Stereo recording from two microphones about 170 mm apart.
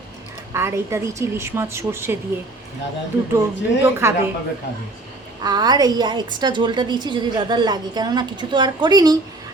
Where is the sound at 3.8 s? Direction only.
15° right (ahead or behind).